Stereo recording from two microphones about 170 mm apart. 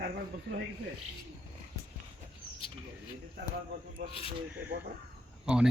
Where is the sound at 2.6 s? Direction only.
30° left (ahead or behind).